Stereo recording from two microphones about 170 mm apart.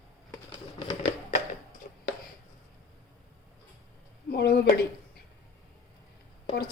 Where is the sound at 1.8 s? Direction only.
60° left (ahead or behind).